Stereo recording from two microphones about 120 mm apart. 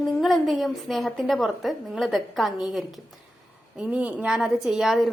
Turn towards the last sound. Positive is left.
turn(degrees=0)  # may be behind; listen again after turning